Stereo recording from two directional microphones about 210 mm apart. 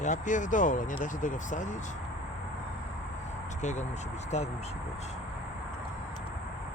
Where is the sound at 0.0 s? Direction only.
35° left (ahead or behind).